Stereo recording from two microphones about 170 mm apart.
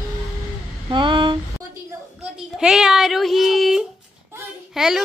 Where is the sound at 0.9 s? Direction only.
30° right (ahead or behind).